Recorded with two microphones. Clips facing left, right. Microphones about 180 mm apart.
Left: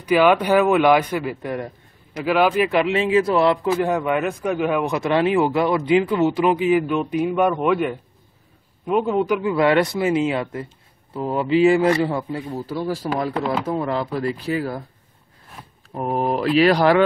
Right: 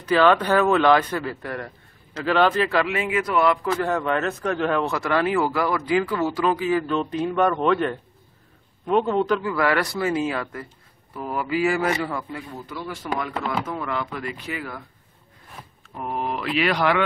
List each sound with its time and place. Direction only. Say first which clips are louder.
0.0 s a man's voice: left 2 dB; 10° left (ahead or behind)
9.4 s a man's voice: left 5 dB; 25° left (ahead or behind)
15.9 s speech: left 6 dB; 40° left (ahead or behind)